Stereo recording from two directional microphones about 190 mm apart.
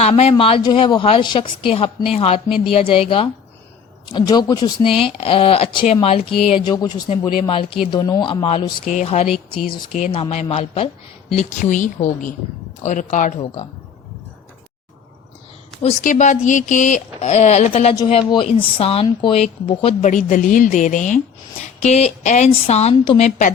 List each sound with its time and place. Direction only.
0.0 s a woman's voice: 35° left (ahead or behind)
15.8 s speech: 35° left (ahead or behind)